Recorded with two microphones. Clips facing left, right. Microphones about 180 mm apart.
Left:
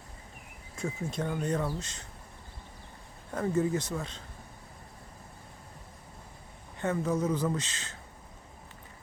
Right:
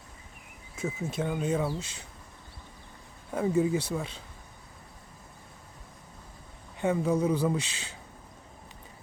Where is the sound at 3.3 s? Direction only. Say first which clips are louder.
Right 2 dB; 10° right (ahead or behind).